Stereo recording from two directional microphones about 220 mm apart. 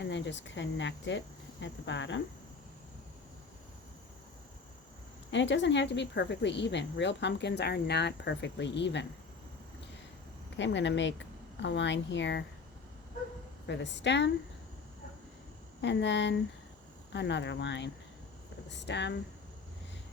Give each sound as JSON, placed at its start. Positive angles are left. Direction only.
{"t": 0.0, "sound": "speech", "side_deg": 55}
{"t": 5.3, "sound": "a woman's voice", "side_deg": 55}
{"t": 10.6, "sound": "speech", "side_deg": 55}
{"t": 13.7, "sound": "a woman's voice", "side_deg": 50}
{"t": 15.8, "sound": "a woman's voice", "side_deg": 55}